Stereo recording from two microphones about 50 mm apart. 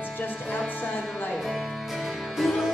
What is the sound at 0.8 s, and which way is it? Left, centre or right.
Music, left.